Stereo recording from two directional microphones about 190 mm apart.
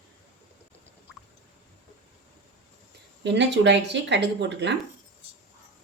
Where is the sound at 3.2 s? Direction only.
65° right (ahead or behind).